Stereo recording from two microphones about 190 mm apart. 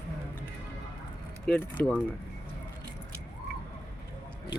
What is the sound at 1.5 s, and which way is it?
Speech, 5° left (ahead or behind).